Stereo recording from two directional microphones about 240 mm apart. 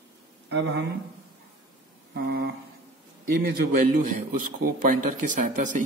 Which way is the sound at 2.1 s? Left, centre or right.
Right.